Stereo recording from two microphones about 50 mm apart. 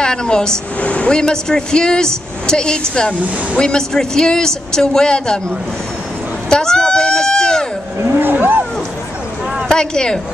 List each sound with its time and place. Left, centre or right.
0.0 s speech: centre
6.5 s a sound: centre
8.0 s vehicle: right
9.7 s speech: centre